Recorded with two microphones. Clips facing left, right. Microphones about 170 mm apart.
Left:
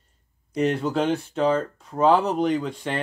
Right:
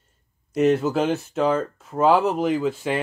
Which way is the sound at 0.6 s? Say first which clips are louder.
Right 3 dB; 5° right (ahead or behind).